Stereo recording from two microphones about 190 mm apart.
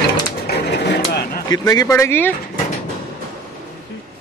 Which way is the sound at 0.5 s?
60° left (ahead or behind).